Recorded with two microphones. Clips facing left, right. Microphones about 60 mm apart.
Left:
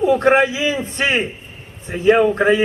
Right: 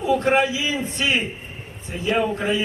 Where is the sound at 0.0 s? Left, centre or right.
Left.